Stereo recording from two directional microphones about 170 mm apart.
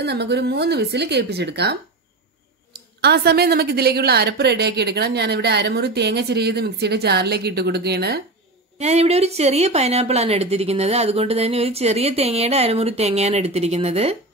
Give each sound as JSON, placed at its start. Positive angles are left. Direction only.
{"t": 0.0, "sound": "a woman's voice", "side_deg": -75}
{"t": 8.7, "sound": "a woman's voice", "side_deg": -40}